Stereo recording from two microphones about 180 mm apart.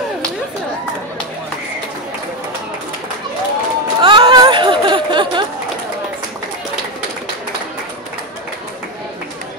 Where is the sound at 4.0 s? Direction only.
30° right (ahead or behind).